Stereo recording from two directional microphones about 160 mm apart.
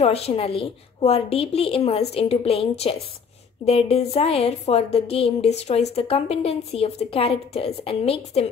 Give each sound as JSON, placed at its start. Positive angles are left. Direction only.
{"t": 0.0, "sound": "a woman's voice", "side_deg": 40}